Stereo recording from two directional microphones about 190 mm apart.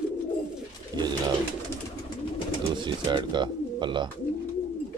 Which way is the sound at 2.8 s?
25° right (ahead or behind).